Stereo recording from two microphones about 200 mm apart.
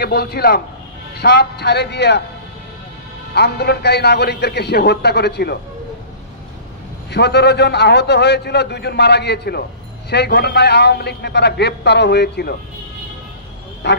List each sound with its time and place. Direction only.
0.0 s a man's voice: 50° left (ahead or behind)
3.3 s a man's voice: 55° left (ahead or behind)
7.1 s a man's voice: 55° left (ahead or behind)
13.8 s a man's voice: 60° left (ahead or behind)